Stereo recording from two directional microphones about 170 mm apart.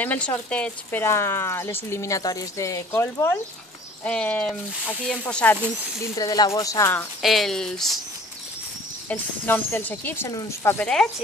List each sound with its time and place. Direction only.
0.0 s speech: 10° left (ahead or behind)
6.1 s speech: 20° left (ahead or behind)
7.2 s speech: centre (ahead or behind)
9.1 s speech: 10° left (ahead or behind)